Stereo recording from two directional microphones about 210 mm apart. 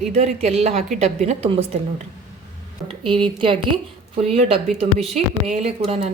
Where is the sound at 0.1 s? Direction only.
30° right (ahead or behind).